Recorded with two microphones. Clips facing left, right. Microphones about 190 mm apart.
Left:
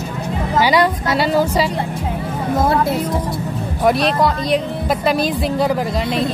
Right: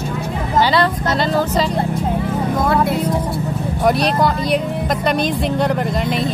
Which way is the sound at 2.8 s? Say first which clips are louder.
Right 1 dB; 10° right (ahead or behind).